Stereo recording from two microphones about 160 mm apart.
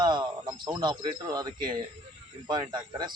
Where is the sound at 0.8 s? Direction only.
30° right (ahead or behind).